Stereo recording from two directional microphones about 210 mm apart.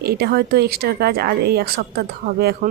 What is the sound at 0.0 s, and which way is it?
A woman's voice, 45° right (ahead or behind).